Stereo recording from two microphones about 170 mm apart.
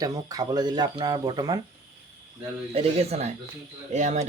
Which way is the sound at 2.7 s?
40° right (ahead or behind).